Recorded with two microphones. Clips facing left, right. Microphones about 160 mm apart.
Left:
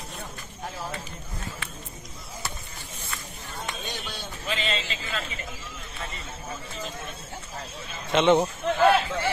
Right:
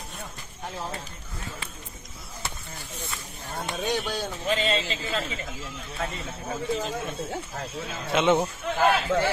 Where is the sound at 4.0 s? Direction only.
40° right (ahead or behind).